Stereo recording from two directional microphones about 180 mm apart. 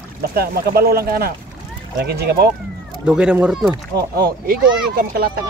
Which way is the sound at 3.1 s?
5° right (ahead or behind).